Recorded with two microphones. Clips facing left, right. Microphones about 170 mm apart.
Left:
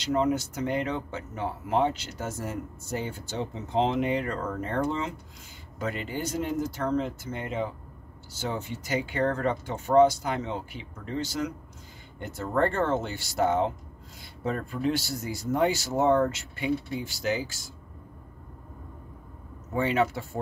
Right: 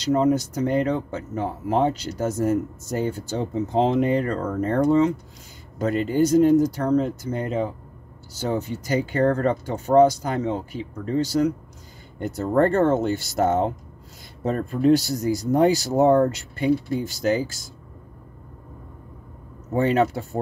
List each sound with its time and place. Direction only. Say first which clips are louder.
0.0 s speech: right 6 dB; 40° right (ahead or behind)
19.7 s speech: right 5 dB; 40° right (ahead or behind)